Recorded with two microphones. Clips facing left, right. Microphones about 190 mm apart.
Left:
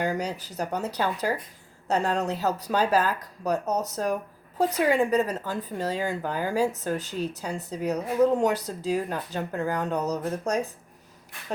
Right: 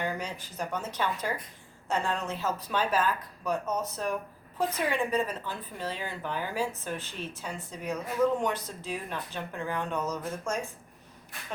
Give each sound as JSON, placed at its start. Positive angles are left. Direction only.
{"t": 0.0, "sound": "a woman's voice", "side_deg": 40}